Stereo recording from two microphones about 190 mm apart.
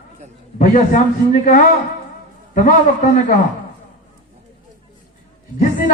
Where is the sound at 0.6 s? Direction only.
40° left (ahead or behind).